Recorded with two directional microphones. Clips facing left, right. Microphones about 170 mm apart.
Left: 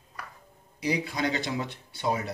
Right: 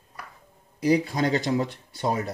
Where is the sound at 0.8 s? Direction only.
40° right (ahead or behind).